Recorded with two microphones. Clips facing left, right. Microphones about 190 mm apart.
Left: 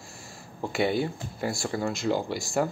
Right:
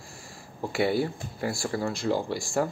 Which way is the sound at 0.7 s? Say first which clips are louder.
Right 1 dB; 25° left (ahead or behind).